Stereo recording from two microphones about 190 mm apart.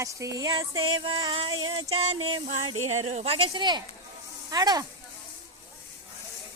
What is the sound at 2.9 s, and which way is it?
Speech, 35° right (ahead or behind).